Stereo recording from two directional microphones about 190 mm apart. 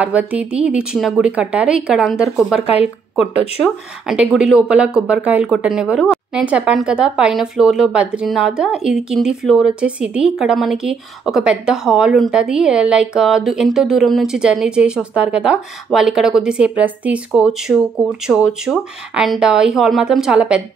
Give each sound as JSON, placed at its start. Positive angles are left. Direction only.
{"t": 0.0, "sound": "a woman's voice", "side_deg": -10}
{"t": 4.1, "sound": "a woman's voice", "side_deg": -5}